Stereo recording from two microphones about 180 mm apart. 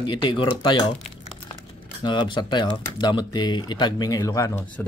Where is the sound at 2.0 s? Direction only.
25° left (ahead or behind).